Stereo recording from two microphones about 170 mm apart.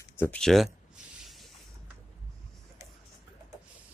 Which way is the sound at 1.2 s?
Centre (ahead or behind).